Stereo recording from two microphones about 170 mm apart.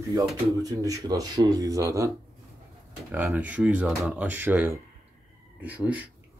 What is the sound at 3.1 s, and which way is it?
Speech, 10° right (ahead or behind).